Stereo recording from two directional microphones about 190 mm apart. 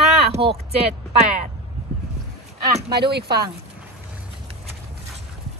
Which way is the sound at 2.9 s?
60° right (ahead or behind).